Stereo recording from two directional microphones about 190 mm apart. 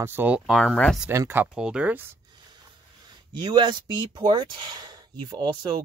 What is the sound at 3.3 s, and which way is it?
Speech, 25° right (ahead or behind).